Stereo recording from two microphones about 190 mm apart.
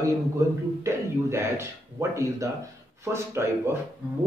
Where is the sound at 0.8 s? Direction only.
15° right (ahead or behind).